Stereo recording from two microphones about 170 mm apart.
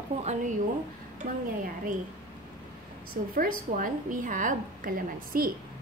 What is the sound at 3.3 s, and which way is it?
A woman's voice, 55° right (ahead or behind).